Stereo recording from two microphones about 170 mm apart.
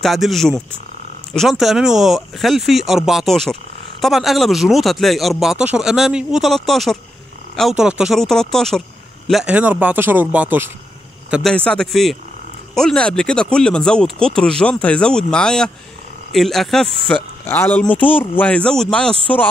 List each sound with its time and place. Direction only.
0.0 s a man's voice: centre (ahead or behind)
11.5 s speech: 5° left (ahead or behind)